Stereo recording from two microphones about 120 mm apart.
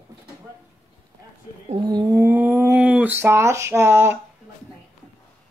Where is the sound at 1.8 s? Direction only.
35° right (ahead or behind).